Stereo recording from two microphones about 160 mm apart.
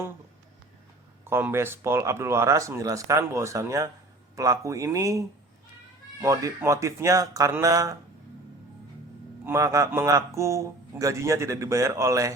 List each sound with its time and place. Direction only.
1.2 s a man's voice: 15° right (ahead or behind)
6.2 s a man's voice: 20° right (ahead or behind)
9.4 s a man's voice: 15° right (ahead or behind)